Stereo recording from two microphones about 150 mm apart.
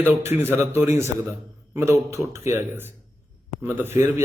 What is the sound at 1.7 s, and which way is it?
A man's voice, 20° right (ahead or behind).